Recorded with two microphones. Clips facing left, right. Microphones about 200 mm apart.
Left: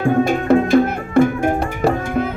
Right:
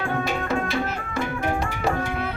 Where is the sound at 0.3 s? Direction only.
55° left (ahead or behind).